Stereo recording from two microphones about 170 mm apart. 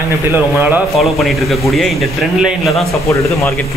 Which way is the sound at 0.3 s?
10° right (ahead or behind).